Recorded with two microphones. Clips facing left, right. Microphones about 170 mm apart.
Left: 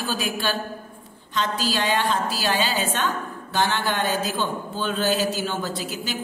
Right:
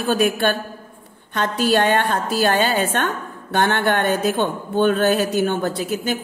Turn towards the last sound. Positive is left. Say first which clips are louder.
# right 7 dB
turn(degrees=-55)  # may be behind; listen again after turning